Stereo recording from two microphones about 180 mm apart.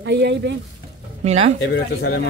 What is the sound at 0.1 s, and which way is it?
Speech, 70° right (ahead or behind).